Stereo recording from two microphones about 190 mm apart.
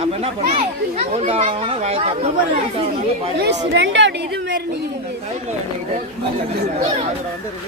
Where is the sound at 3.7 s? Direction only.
70° right (ahead or behind).